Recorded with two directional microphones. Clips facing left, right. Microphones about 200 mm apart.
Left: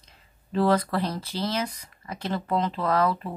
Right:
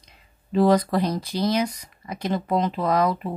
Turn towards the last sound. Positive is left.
turn(degrees=-15)  # may be behind; listen again after turning